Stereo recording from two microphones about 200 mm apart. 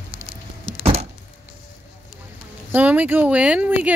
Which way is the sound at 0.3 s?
30° right (ahead or behind).